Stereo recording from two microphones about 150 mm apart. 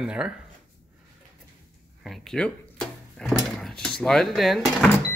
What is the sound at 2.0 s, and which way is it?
Drawer open or close, centre (ahead or behind).